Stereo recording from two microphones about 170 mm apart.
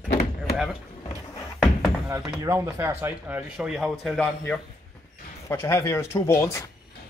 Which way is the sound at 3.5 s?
Centre (ahead or behind).